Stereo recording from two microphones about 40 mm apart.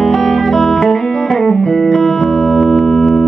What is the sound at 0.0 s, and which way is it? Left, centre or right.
Music, centre.